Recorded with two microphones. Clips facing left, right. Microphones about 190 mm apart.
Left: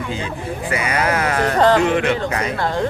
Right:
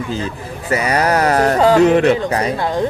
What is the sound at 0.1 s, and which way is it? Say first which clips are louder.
Speech: right 1 dB; 40° right (ahead or behind).